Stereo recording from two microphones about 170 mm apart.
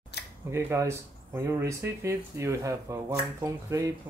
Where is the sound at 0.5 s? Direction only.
15° right (ahead or behind).